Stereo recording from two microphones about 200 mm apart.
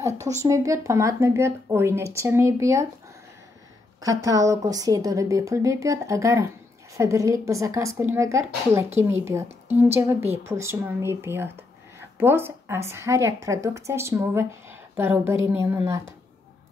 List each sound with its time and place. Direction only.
0.4 s speech: 15° right (ahead or behind)
4.0 s speech: 15° right (ahead or behind)